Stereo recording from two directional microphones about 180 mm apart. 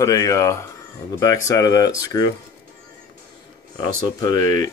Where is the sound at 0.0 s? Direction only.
20° left (ahead or behind).